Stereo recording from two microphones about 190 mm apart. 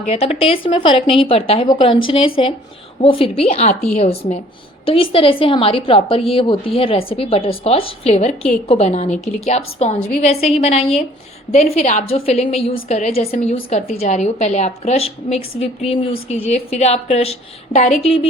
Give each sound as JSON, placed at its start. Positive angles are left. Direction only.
{"t": 0.1, "sound": "a woman's voice", "side_deg": 30}